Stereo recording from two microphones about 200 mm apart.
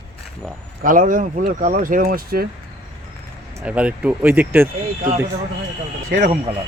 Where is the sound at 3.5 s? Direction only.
5° right (ahead or behind).